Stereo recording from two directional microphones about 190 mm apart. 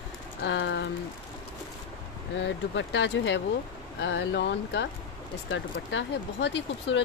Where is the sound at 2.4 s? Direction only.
70° left (ahead or behind).